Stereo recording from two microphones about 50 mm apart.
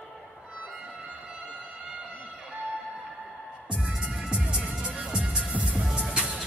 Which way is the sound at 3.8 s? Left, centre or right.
Centre.